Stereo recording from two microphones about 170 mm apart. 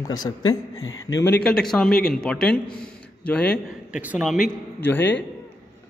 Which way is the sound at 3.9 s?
5° right (ahead or behind).